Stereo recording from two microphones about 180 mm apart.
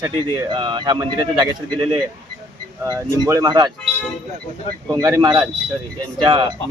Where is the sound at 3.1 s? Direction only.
15° right (ahead or behind).